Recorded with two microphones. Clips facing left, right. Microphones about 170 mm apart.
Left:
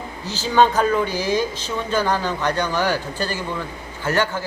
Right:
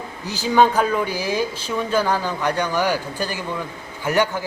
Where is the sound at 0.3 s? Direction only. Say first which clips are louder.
Even; 10° right (ahead or behind).